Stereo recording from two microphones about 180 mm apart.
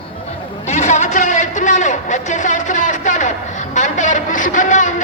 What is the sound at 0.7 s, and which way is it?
A man's voice, 40° left (ahead or behind).